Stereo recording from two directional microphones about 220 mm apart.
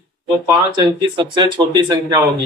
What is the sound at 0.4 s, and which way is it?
Speech, 20° right (ahead or behind).